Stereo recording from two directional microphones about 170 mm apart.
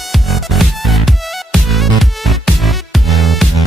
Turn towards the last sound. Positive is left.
turn(degrees=0)  # may be behind; listen again after turning